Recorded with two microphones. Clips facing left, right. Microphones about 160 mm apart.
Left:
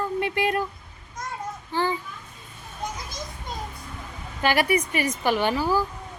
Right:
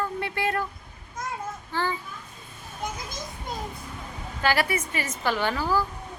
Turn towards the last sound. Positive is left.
turn(degrees=15)  # may be behind; listen again after turning